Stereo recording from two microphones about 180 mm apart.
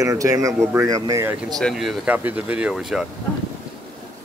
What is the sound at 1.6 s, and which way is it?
Speech, centre (ahead or behind).